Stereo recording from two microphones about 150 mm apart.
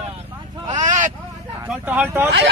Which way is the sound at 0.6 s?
55° right (ahead or behind).